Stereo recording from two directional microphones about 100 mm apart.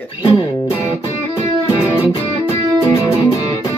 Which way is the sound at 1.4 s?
30° left (ahead or behind).